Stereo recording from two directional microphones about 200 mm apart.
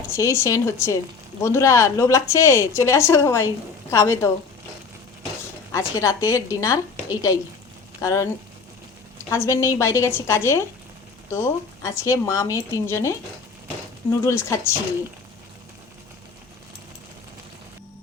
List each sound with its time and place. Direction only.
0.1 s a woman's voice: 15° left (ahead or behind)
5.7 s a woman's voice: 15° left (ahead or behind)
8.0 s a woman's voice: 15° left (ahead or behind)
9.3 s a woman's voice: 15° left (ahead or behind)